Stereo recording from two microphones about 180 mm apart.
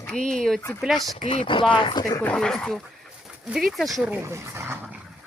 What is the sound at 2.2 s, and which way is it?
Speech, 5° left (ahead or behind).